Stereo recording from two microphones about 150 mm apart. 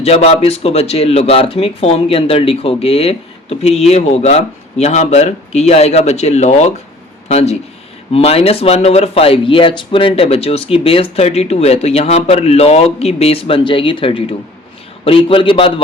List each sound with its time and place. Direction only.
0.0 s a man's voice: 45° left (ahead or behind)